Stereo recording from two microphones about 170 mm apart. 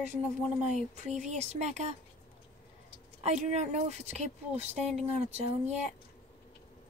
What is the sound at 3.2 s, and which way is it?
Speech, 45° right (ahead or behind).